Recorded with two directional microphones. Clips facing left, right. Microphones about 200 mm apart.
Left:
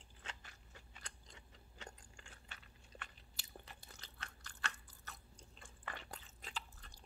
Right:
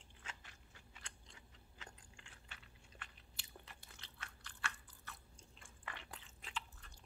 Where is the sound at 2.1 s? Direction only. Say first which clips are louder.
Left 2 dB; 45° left (ahead or behind).